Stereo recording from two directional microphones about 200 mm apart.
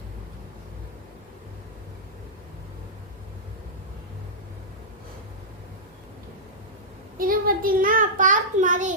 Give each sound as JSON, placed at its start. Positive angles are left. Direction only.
{"t": 7.2, "sound": "a child's voice", "side_deg": -45}